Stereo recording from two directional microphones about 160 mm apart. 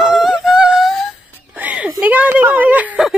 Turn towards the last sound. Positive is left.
turn(degrees=-5)  # may be behind; listen again after turning